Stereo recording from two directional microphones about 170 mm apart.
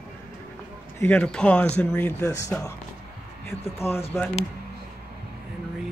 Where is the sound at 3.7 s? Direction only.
15° left (ahead or behind).